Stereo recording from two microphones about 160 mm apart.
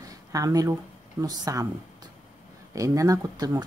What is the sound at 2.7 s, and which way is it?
Speech, 20° right (ahead or behind).